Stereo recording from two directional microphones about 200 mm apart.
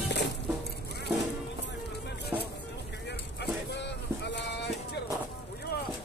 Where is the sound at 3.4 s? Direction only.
60° left (ahead or behind).